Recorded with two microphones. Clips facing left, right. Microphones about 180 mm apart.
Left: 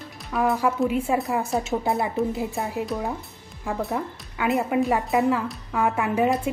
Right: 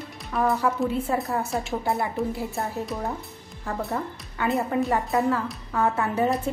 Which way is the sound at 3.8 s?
Centre (ahead or behind).